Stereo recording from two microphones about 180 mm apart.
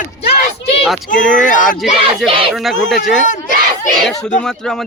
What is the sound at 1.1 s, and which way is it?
Speech, 45° left (ahead or behind).